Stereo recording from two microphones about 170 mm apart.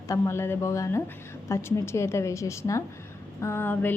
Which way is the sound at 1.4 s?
15° left (ahead or behind).